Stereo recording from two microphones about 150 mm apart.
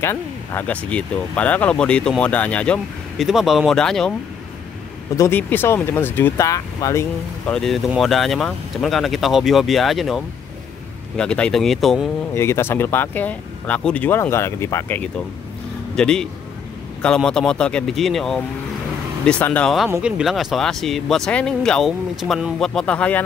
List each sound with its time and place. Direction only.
0.0 s speech: 15° left (ahead or behind)
5.1 s speech: 15° left (ahead or behind)
7.4 s speech: 5° left (ahead or behind)
12.4 s speech: 15° left (ahead or behind)
16.0 s speech: 5° left (ahead or behind)
20.0 s speech: 5° right (ahead or behind)